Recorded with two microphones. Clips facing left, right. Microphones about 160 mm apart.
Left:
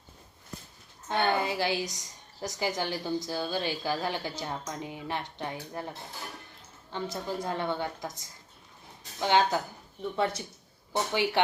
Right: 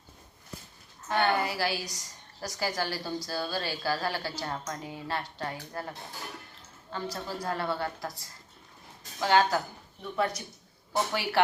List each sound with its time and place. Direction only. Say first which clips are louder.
1.0 s a woman's voice: even; 20° left (ahead or behind)
6.9 s a woman's voice: left 2 dB; 20° left (ahead or behind)